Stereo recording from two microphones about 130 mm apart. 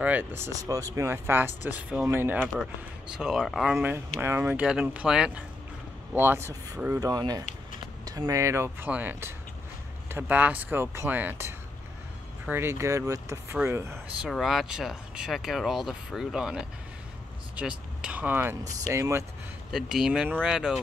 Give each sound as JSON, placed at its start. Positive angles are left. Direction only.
{"t": 0.0, "sound": "speech", "side_deg": -10}
{"t": 3.1, "sound": "speech", "side_deg": -5}
{"t": 4.2, "sound": "speech", "side_deg": -20}
{"t": 6.1, "sound": "speech", "side_deg": -20}
{"t": 14.3, "sound": "speech", "side_deg": 0}
{"t": 19.7, "sound": "speech", "side_deg": -5}